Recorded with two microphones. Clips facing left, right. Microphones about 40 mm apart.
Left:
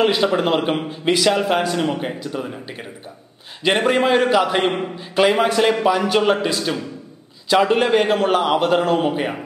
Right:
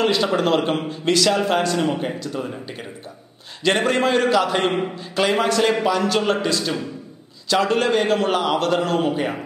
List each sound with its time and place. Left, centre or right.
0.0 s a man's voice: centre
3.6 s a man's voice: centre